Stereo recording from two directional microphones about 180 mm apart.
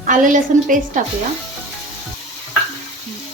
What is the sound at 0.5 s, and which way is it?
Speech, 45° right (ahead or behind).